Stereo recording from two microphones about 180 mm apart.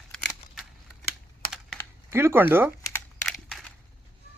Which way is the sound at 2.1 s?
15° right (ahead or behind).